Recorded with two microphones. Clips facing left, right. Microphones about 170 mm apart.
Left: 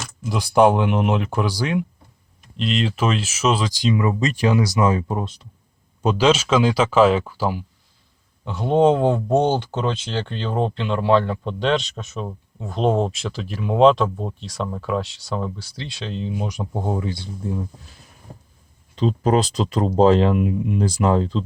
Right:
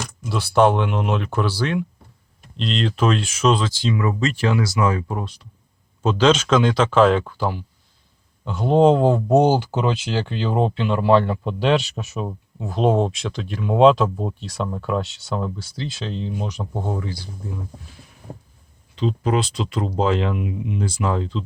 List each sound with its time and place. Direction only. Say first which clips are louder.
0.3 s speech: left 1 dB; 15° left (ahead or behind)
18.9 s speech: left 3 dB; 40° left (ahead or behind)